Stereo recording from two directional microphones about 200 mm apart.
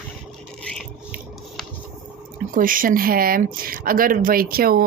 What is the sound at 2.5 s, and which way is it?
Speech, 45° right (ahead or behind).